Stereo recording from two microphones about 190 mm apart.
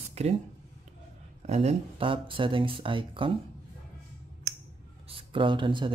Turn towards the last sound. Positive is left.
turn(degrees=-25)  # may be behind; listen again after turning